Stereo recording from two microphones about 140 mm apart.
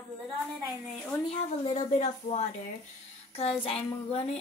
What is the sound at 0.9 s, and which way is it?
Speech, 5° left (ahead or behind).